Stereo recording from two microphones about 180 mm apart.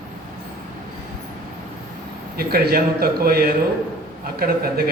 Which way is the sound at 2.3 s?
60° right (ahead or behind).